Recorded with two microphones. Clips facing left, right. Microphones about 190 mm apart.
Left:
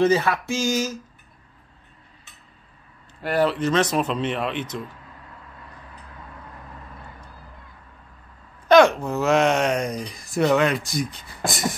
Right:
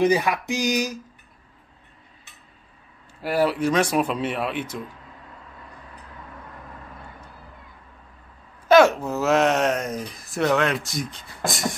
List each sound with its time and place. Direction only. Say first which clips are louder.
0.0 s speech: left 1 dB; 15° right (ahead or behind)
3.2 s speech: even; 5° right (ahead or behind)
8.6 s speech: left 1 dB; 5° right (ahead or behind)